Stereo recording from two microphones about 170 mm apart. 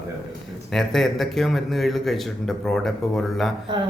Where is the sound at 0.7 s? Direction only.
Centre (ahead or behind).